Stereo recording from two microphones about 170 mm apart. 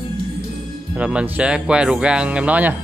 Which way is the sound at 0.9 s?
5° right (ahead or behind).